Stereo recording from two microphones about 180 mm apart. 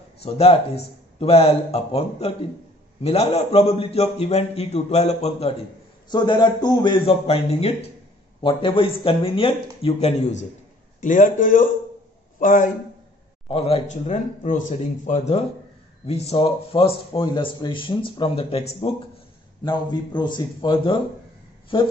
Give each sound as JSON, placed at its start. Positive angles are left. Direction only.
{"t": 0.2, "sound": "a man's voice", "side_deg": 35}
{"t": 6.0, "sound": "a man's voice", "side_deg": 25}
{"t": 13.5, "sound": "a man's voice", "side_deg": 30}
{"t": 19.6, "sound": "speech", "side_deg": 25}